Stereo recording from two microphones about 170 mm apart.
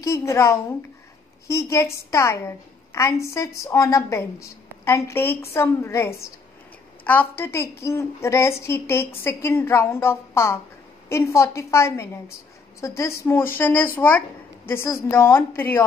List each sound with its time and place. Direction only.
0.0 s a woman's voice: 15° left (ahead or behind)